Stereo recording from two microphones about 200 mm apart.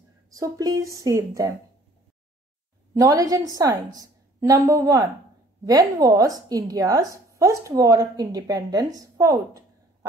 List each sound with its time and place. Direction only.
0.3 s a woman's voice: 15° right (ahead or behind)
2.9 s a woman's voice: 15° right (ahead or behind)